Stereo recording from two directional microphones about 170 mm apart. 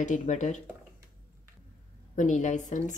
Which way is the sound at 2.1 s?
45° left (ahead or behind).